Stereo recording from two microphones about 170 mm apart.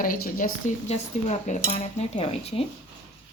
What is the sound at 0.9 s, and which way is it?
Cutlery, 45° left (ahead or behind).